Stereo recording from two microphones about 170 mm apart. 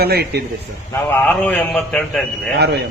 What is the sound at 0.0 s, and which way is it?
Speech, 70° right (ahead or behind).